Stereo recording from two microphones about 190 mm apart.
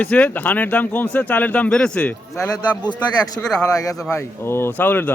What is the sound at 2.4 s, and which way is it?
Speech, 20° left (ahead or behind).